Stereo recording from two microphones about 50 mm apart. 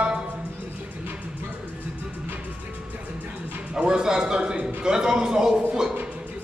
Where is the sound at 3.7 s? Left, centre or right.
Centre.